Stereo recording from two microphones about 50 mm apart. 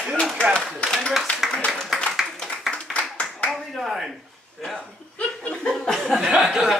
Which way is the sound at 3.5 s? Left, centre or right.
Centre.